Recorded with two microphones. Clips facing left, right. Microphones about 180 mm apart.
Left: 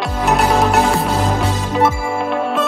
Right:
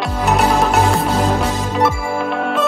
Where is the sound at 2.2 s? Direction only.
Centre (ahead or behind).